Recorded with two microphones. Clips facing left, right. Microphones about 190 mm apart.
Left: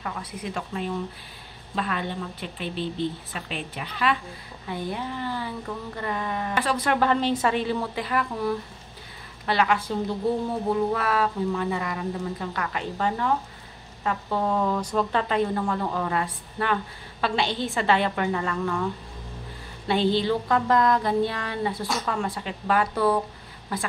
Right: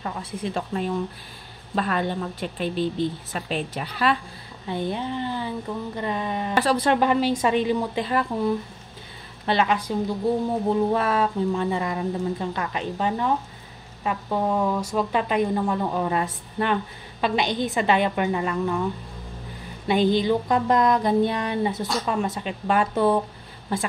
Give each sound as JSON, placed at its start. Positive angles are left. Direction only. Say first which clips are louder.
{"t": 0.0, "sound": "speech", "louder": "right 3 dB", "side_deg": -25}
{"t": 1.8, "sound": "a woman's voice", "louder": "right 4 dB", "side_deg": -40}
{"t": 4.6, "sound": "speech", "louder": "right 4 dB", "side_deg": -25}
{"t": 6.6, "sound": "a woman's voice", "louder": "right 4 dB", "side_deg": -30}
{"t": 7.0, "sound": "speech", "louder": "right 2 dB", "side_deg": -10}
{"t": 10.7, "sound": "speech", "louder": "right 2 dB", "side_deg": -25}
{"t": 19.9, "sound": "speech", "louder": "right 3 dB", "side_deg": -15}